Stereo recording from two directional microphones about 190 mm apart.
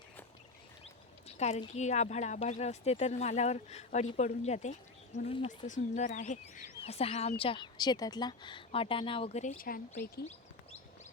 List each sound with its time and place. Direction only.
1.4 s speech: 35° left (ahead or behind)